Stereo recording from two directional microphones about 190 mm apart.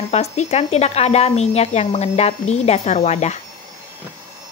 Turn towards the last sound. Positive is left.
turn(degrees=35)  # may be behind; listen again after turning